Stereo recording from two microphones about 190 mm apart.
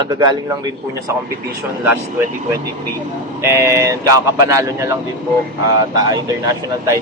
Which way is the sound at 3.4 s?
15° right (ahead or behind).